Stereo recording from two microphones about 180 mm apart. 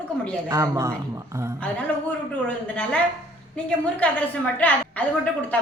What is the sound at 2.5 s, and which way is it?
Speech, 10° left (ahead or behind).